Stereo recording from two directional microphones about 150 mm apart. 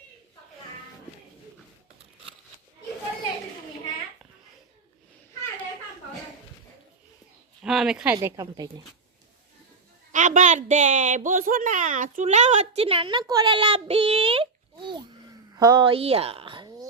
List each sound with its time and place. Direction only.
7.6 s speech: 5° right (ahead or behind)
8.2 s a woman's voice: 25° right (ahead or behind)
10.1 s a child's voice: 60° right (ahead or behind); by 16.6 s 35° right (ahead or behind)